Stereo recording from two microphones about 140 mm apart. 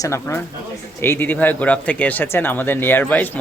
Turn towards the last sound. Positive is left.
turn(degrees=15)  # may be behind; listen again after turning